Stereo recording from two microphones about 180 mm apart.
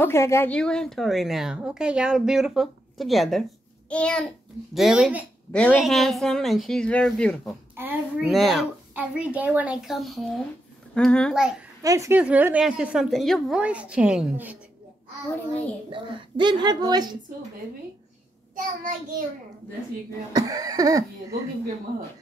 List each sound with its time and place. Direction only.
0.0 s a woman's voice: 15° left (ahead or behind)
7.7 s a woman's voice: 10° right (ahead or behind)
11.8 s a woman's voice: 20° right (ahead or behind)
15.9 s speech: 25° right (ahead or behind)
18.5 s a child's voice: 50° right (ahead or behind)
20.3 s speech: 20° right (ahead or behind)